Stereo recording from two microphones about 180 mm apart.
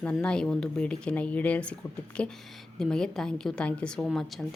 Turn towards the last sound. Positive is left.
turn(degrees=0)  # may be behind; listen again after turning